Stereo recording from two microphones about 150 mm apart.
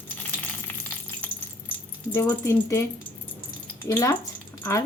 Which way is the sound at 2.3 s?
20° left (ahead or behind).